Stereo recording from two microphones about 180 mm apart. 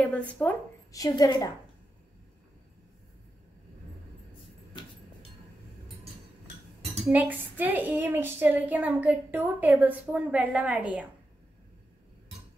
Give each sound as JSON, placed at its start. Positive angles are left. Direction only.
{"t": 0.3, "sound": "speech", "side_deg": 10}
{"t": 0.9, "sound": "a woman's voice", "side_deg": 20}
{"t": 4.7, "sound": "a sound", "side_deg": 25}
{"t": 7.1, "sound": "a woman's voice", "side_deg": -10}